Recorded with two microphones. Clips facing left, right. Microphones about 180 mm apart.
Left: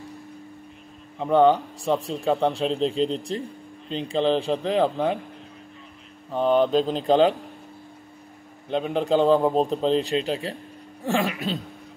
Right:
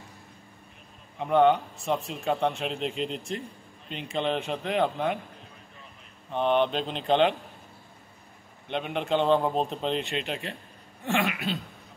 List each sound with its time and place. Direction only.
1.2 s speech: 35° left (ahead or behind)
6.3 s speech: 40° left (ahead or behind)
8.6 s speech: 35° left (ahead or behind)